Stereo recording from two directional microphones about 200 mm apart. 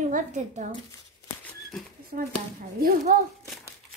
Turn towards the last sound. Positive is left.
turn(degrees=-45)  # may be behind; listen again after turning